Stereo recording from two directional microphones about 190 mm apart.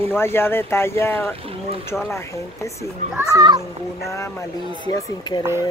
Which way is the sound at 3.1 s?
20° right (ahead or behind).